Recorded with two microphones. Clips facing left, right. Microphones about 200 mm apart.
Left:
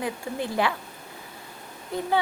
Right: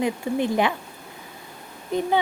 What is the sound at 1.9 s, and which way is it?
Speech, 20° right (ahead or behind).